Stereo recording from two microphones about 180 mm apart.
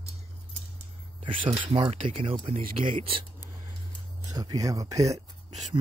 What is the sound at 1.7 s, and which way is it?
Speech, 35° right (ahead or behind).